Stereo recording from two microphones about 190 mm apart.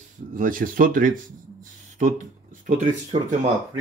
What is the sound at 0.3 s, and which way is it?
Speech, 45° right (ahead or behind).